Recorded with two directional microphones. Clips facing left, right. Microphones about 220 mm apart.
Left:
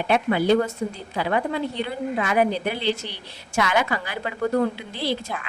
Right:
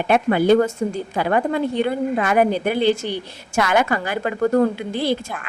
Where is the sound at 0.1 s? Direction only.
50° right (ahead or behind).